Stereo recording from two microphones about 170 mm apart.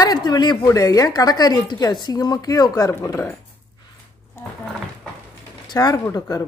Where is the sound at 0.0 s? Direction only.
25° left (ahead or behind).